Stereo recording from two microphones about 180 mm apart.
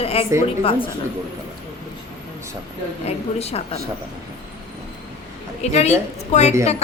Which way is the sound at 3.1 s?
35° left (ahead or behind).